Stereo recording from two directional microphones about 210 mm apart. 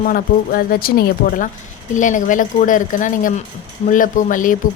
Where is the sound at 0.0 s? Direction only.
40° left (ahead or behind).